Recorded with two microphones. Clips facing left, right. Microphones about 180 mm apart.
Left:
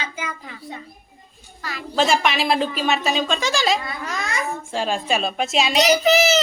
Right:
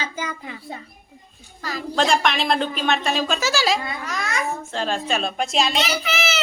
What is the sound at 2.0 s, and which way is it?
A woman's voice, 5° left (ahead or behind).